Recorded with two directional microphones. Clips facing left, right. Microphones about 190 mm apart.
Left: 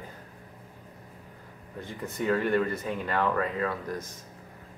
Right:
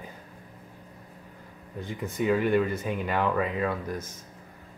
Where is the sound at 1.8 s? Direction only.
15° right (ahead or behind).